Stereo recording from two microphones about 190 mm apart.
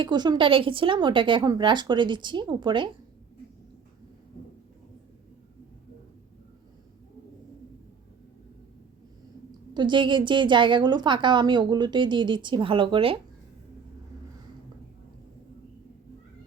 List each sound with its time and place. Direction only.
0.0 s a woman's voice: 25° right (ahead or behind)
9.5 s a woman's voice: 25° right (ahead or behind)